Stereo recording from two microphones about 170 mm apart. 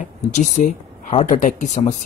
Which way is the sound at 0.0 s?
45° left (ahead or behind).